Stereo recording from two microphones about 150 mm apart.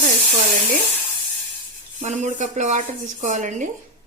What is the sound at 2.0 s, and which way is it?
Speech, 50° right (ahead or behind).